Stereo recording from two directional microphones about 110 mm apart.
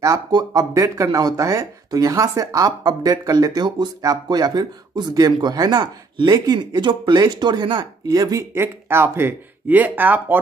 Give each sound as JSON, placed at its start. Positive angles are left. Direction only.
{"t": 0.0, "sound": "speech", "side_deg": -35}